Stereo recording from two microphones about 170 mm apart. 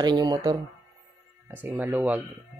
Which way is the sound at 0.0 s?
25° right (ahead or behind).